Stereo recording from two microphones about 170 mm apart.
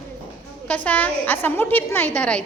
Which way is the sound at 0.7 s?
10° left (ahead or behind).